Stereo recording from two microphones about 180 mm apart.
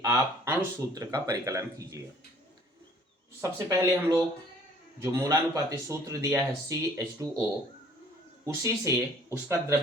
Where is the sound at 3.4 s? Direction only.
15° right (ahead or behind).